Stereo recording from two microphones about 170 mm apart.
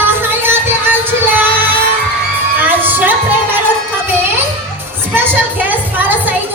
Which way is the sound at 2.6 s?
10° right (ahead or behind).